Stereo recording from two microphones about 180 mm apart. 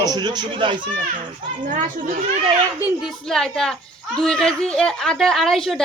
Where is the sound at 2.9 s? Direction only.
Centre (ahead or behind).